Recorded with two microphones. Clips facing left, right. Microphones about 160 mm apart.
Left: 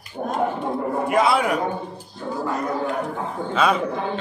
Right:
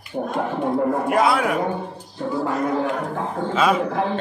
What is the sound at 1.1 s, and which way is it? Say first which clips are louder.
Speech: left 2 dB; centre (ahead or behind).